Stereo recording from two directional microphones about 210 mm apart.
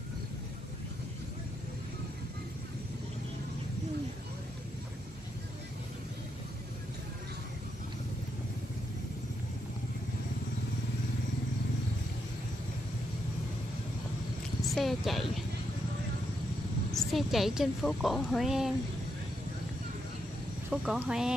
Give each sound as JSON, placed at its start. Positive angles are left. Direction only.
{"t": 14.7, "sound": "a sound", "side_deg": 0}
{"t": 16.9, "sound": "a woman's voice", "side_deg": 0}
{"t": 20.7, "sound": "a woman's voice", "side_deg": -5}